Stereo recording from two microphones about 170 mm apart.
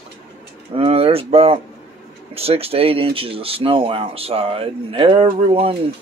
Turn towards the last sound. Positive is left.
turn(degrees=-35)  # may be behind; listen again after turning